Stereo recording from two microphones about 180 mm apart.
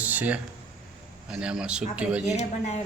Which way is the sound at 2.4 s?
40° left (ahead or behind).